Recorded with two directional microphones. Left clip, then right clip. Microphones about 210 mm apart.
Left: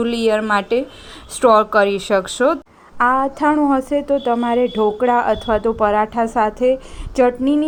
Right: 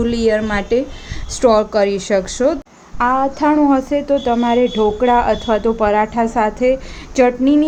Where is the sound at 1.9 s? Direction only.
30° right (ahead or behind).